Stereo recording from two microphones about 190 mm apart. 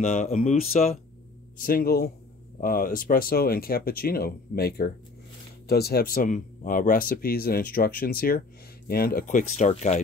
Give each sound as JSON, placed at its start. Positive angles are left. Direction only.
{"t": 0.0, "sound": "speech", "side_deg": 35}
{"t": 1.6, "sound": "speech", "side_deg": 50}